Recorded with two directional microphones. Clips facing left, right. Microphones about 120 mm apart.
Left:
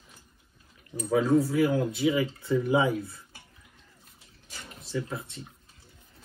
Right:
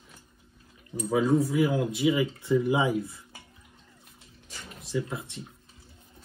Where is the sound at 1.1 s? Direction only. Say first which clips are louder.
Left 1 dB; centre (ahead or behind).